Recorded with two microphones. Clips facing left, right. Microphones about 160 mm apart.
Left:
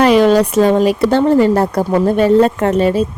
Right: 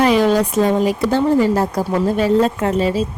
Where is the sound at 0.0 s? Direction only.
70° left (ahead or behind).